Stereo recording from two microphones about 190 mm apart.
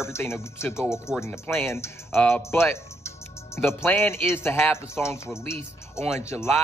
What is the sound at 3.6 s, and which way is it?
Speech, 15° left (ahead or behind).